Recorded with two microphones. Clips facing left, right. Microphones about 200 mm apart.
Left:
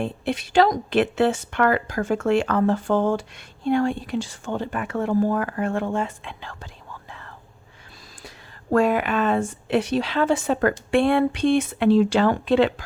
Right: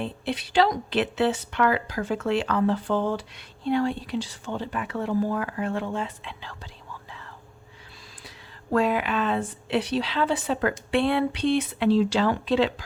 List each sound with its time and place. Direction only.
0.0 s a woman's voice: 50° left (ahead or behind)
7.1 s whispering: 55° left (ahead or behind)
8.7 s a woman's voice: 50° left (ahead or behind)